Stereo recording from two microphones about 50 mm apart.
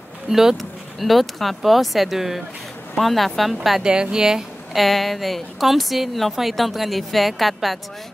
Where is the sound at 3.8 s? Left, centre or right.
Centre.